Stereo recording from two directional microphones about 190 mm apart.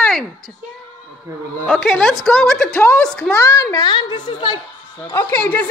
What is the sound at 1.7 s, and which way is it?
A woman's voice, centre (ahead or behind).